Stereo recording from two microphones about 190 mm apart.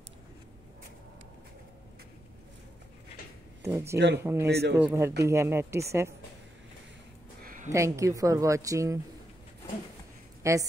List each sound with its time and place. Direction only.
3.6 s speech: 15° right (ahead or behind)
4.5 s speech: 60° right (ahead or behind)
4.7 s speech: 10° right (ahead or behind)
7.4 s a sound: 45° right (ahead or behind)
7.7 s speech: 15° right (ahead or behind)
10.4 s speech: 15° right (ahead or behind)